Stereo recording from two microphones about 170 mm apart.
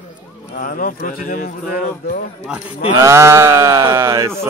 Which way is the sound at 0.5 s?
55° left (ahead or behind).